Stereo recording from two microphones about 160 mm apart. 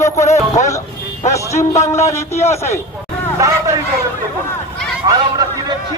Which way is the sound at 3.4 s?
20° right (ahead or behind).